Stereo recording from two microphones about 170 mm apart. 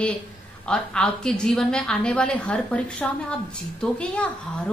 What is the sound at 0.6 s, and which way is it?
A woman's voice, 5° left (ahead or behind).